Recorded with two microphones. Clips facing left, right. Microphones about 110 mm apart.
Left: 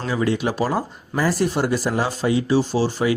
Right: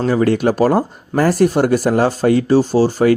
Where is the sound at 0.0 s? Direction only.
45° right (ahead or behind).